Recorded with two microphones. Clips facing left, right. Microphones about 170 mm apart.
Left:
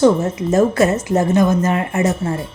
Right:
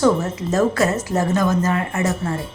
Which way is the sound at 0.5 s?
20° left (ahead or behind).